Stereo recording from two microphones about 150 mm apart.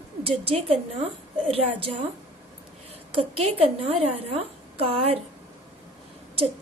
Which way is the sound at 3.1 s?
45° right (ahead or behind).